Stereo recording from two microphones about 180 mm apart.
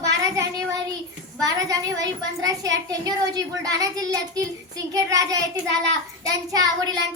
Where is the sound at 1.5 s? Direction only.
20° right (ahead or behind).